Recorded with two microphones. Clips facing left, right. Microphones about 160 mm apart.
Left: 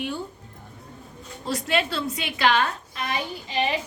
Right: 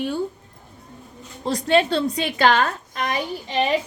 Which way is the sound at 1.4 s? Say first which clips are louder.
Right 6 dB; 30° right (ahead or behind).